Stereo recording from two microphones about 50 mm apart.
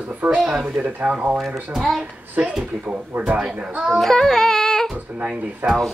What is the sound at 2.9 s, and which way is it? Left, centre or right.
Speech, right.